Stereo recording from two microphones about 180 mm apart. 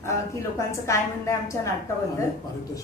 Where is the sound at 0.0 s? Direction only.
15° left (ahead or behind).